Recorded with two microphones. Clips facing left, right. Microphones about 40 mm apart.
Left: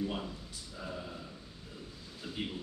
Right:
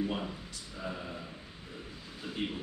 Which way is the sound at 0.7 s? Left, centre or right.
Right.